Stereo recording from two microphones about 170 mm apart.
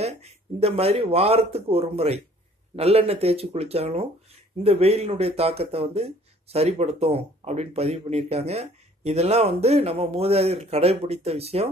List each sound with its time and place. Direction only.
0.0 s speech: 40° right (ahead or behind)